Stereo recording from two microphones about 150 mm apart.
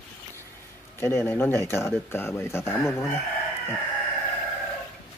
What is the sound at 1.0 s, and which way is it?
Speech, 15° left (ahead or behind).